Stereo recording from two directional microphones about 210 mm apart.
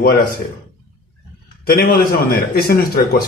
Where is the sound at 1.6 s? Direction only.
50° left (ahead or behind).